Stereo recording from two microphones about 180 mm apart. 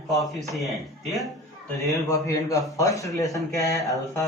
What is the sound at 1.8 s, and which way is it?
A man's voice, 15° left (ahead or behind).